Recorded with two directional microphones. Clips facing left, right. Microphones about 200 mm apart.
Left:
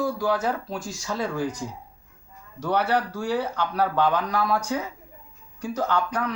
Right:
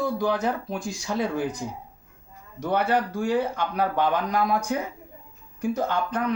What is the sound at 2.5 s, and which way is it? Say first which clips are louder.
Speech: even; 15° right (ahead or behind).